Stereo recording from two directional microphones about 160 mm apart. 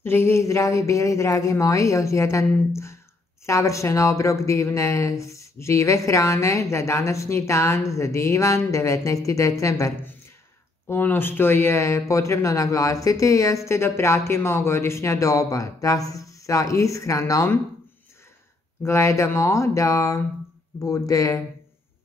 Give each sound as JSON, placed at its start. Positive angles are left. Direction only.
{"t": 0.0, "sound": "speech", "side_deg": 15}
{"t": 18.8, "sound": "speech", "side_deg": 15}